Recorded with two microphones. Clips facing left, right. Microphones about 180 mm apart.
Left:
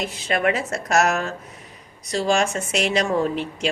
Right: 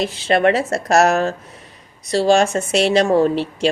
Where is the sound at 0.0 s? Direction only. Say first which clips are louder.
Right 6 dB; 30° right (ahead or behind).